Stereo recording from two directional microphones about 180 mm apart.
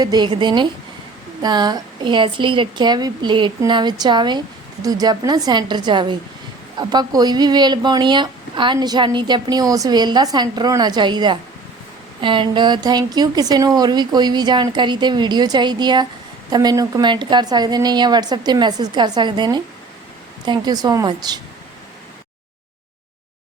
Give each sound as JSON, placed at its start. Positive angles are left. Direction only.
{"t": 0.0, "sound": "speech", "side_deg": -25}